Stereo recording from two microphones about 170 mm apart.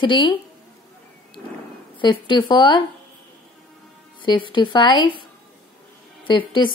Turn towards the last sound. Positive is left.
turn(degrees=25)  # may be behind; listen again after turning